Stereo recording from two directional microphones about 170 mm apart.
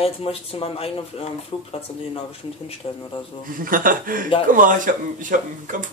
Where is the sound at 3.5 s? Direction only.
55° right (ahead or behind).